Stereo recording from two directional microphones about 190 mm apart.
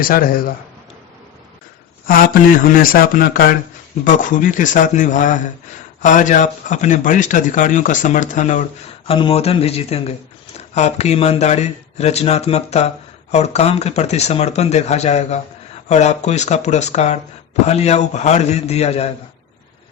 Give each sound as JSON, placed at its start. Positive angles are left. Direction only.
{"t": 0.0, "sound": "speech", "side_deg": 50}
{"t": 2.0, "sound": "speech", "side_deg": 50}
{"t": 9.0, "sound": "speech", "side_deg": 30}